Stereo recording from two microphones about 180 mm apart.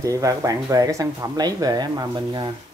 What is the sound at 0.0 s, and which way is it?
Speech, 20° right (ahead or behind).